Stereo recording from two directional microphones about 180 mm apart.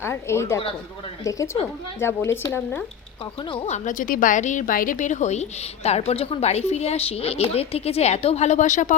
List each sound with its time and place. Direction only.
0.0 s speech: 15° left (ahead or behind)
3.5 s a woman's voice: 40° left (ahead or behind)